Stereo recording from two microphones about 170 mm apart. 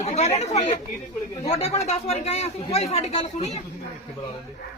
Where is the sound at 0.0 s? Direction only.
40° left (ahead or behind).